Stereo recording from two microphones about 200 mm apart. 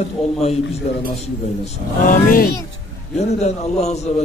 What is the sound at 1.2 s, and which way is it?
A man's voice, 35° left (ahead or behind).